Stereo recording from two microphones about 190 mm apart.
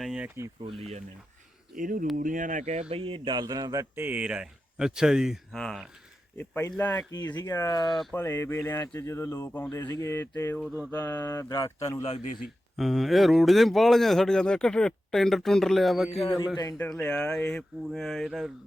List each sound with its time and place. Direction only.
0.0 s a sound: 5° right (ahead or behind)
0.6 s speech: 30° right (ahead or behind)
1.7 s speech: 45° right (ahead or behind)
2.9 s speech: 25° right (ahead or behind); by 7.0 s 10° left (ahead or behind)
7.1 s speech: 20° left (ahead or behind)
10.6 s speech: 10° right (ahead or behind)
10.9 s speech: 10° left (ahead or behind)
12.0 s a man's voice: 35° left (ahead or behind)
12.7 s speech: centre (ahead or behind)
16.6 s speech: 15° left (ahead or behind); by 18.5 s centre (ahead or behind)